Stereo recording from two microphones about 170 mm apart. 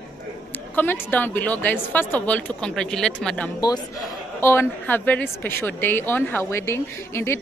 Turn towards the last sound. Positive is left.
turn(degrees=15)  # may be behind; listen again after turning